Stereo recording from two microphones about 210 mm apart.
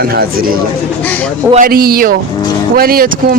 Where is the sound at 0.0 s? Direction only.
45° right (ahead or behind).